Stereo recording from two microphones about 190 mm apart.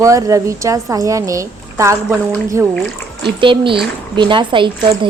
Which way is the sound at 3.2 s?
25° right (ahead or behind).